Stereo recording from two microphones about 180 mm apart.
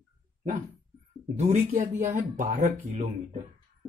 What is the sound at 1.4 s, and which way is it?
Speech, 40° right (ahead or behind).